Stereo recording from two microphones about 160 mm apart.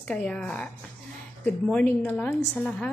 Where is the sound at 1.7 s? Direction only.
10° left (ahead or behind).